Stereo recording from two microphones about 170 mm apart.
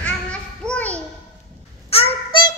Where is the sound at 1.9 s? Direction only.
30° left (ahead or behind).